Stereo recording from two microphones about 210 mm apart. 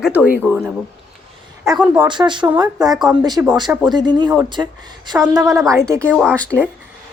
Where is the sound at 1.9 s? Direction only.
20° right (ahead or behind).